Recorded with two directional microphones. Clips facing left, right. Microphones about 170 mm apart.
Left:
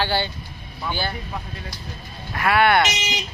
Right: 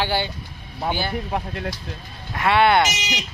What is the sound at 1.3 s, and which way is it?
Speech, 65° right (ahead or behind).